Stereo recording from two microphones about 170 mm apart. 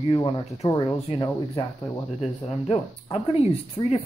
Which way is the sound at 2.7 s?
35° left (ahead or behind).